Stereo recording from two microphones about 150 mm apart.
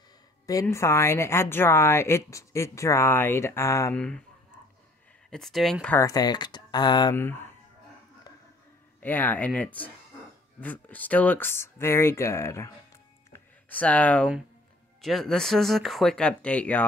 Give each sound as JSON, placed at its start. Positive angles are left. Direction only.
{"t": 0.5, "sound": "a woman's voice", "side_deg": 20}
{"t": 3.9, "sound": "a woman's voice", "side_deg": 5}
{"t": 5.3, "sound": "speech", "side_deg": 0}
{"t": 5.9, "sound": "speech", "side_deg": 25}
{"t": 7.2, "sound": "a woman's voice", "side_deg": 15}
{"t": 9.0, "sound": "a woman's voice", "side_deg": 10}
{"t": 13.3, "sound": "a sound", "side_deg": 10}
{"t": 15.0, "sound": "speech", "side_deg": 0}